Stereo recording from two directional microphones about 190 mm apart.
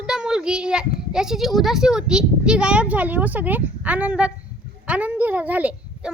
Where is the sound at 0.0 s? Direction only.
5° right (ahead or behind).